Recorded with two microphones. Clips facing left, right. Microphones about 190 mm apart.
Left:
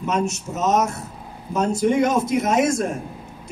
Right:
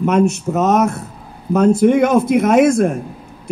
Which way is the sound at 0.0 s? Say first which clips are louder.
Right 9 dB; 55° right (ahead or behind).